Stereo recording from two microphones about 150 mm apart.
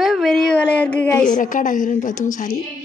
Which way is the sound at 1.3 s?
60° left (ahead or behind).